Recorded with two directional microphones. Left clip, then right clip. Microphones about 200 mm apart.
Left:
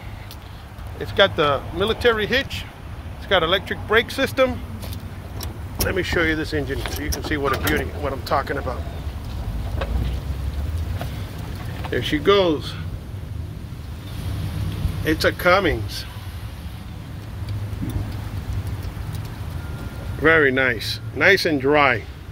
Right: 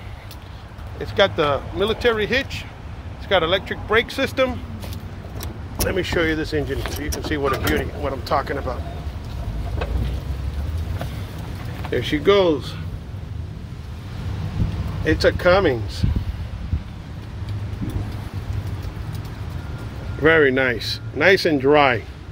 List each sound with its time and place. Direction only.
0.9 s speech: centre (ahead or behind)
5.9 s speech: 15° right (ahead or behind)
11.9 s speech: 5° right (ahead or behind)
15.0 s speech: 15° right (ahead or behind)
20.2 s speech: 15° right (ahead or behind)